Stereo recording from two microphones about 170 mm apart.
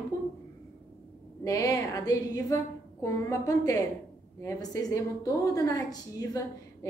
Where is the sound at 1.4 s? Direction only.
20° left (ahead or behind).